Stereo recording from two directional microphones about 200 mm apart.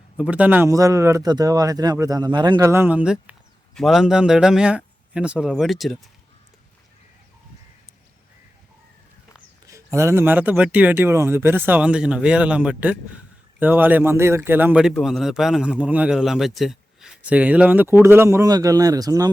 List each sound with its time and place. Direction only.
0.2 s a man's voice: 5° right (ahead or behind)
9.6 s a man's voice: 15° right (ahead or behind)